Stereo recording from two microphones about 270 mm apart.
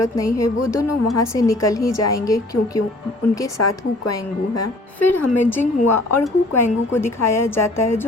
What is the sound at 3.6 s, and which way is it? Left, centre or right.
A woman's voice, left.